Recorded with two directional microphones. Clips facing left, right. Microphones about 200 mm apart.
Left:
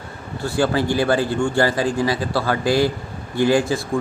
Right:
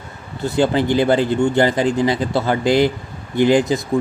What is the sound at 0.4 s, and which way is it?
Speech, 20° right (ahead or behind).